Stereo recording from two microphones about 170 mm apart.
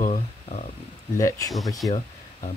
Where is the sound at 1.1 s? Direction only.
20° left (ahead or behind).